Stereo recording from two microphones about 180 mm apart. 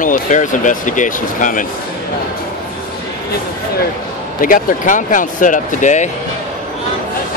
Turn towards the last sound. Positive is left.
turn(degrees=40)  # may be behind; listen again after turning